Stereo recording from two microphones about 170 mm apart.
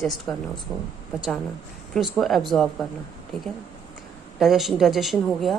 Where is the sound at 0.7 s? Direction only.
20° right (ahead or behind).